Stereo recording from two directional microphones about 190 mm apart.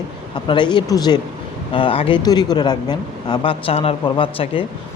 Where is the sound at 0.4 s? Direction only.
25° left (ahead or behind).